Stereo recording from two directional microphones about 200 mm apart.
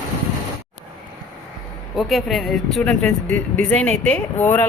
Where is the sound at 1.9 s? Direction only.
Centre (ahead or behind).